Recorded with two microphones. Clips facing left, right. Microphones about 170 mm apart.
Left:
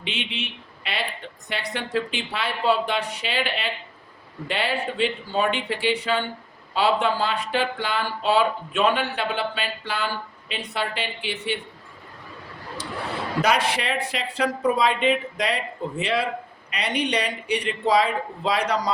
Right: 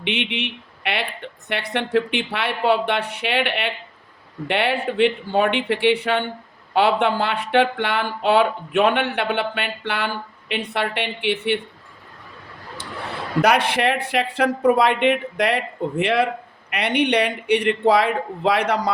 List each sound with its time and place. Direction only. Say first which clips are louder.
0.0 s speech: right 6 dB; 65° right (ahead or behind)
13.7 s speech: right 5 dB; 60° right (ahead or behind)